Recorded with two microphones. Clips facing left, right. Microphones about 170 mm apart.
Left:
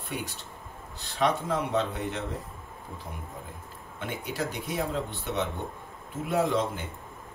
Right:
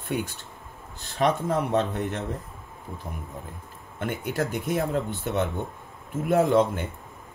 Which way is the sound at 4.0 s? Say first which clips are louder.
Right 5 dB; 55° right (ahead or behind).